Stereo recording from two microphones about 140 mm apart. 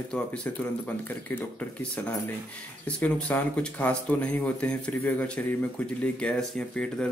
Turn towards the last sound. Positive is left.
turn(degrees=5)  # may be behind; listen again after turning